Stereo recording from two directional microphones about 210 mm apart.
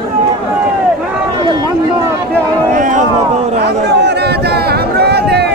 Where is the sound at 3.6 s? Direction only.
50° right (ahead or behind).